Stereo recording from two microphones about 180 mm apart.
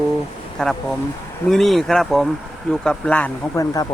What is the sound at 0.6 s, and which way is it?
Speech, 5° left (ahead or behind).